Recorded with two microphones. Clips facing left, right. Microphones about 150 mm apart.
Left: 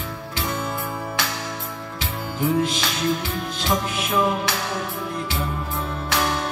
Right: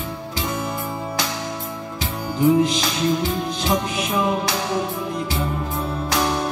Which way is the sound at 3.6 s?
20° right (ahead or behind).